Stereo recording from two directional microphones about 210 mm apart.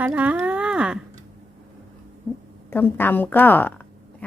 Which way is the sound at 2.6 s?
10° left (ahead or behind).